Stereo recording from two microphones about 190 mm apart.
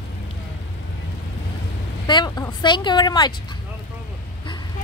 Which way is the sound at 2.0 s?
25° left (ahead or behind).